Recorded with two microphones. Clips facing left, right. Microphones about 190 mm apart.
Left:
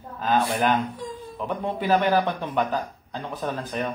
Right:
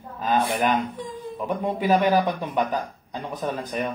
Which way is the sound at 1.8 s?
10° right (ahead or behind).